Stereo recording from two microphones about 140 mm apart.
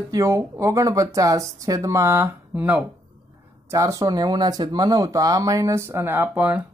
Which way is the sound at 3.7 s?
25° right (ahead or behind).